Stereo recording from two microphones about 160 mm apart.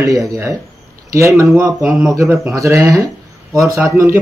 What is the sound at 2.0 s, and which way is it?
A man's voice, 20° right (ahead or behind).